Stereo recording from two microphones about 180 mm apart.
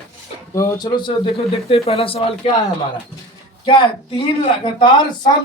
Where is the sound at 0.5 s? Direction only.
20° left (ahead or behind).